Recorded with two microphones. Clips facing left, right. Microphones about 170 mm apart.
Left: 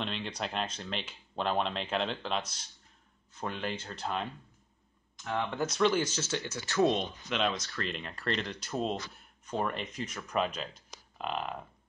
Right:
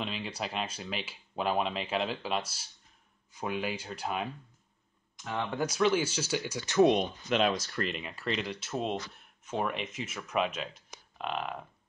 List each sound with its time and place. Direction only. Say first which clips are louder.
0.0 s speech: even; 5° right (ahead or behind)
7.5 s speech: right 4 dB; 30° right (ahead or behind)
7.9 s speech: even; 5° right (ahead or behind)